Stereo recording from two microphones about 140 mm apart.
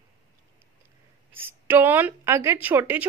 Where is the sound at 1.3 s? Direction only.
15° right (ahead or behind).